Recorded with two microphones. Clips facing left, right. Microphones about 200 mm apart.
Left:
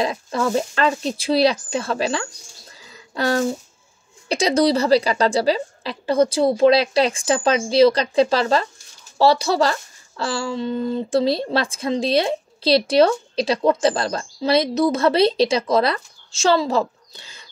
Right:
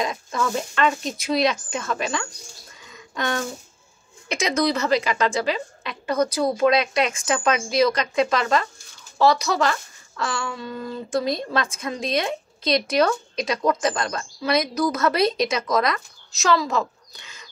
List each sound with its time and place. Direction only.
0.0 s speech: 30° left (ahead or behind)
2.8 s a sound: 35° left (ahead or behind)
4.3 s speech: 35° left (ahead or behind)